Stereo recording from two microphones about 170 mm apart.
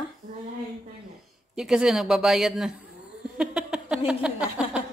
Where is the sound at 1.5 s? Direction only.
5° right (ahead or behind).